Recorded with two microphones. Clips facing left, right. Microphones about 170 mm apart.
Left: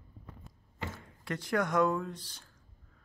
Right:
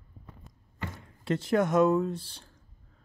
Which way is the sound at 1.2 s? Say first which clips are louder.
Right 6 dB; 25° right (ahead or behind).